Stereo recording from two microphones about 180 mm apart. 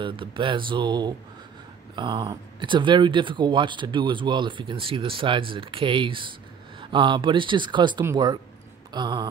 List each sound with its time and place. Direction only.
0.0 s speech: 30° right (ahead or behind)